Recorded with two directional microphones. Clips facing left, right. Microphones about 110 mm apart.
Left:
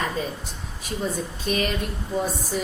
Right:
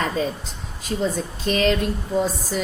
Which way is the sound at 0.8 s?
90° right.